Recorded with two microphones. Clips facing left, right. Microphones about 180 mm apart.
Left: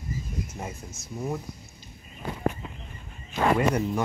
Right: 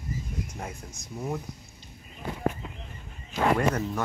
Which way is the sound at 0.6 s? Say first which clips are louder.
Left 1 dB; 5° left (ahead or behind).